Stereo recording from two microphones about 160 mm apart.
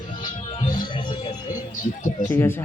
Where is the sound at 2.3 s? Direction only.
15° left (ahead or behind).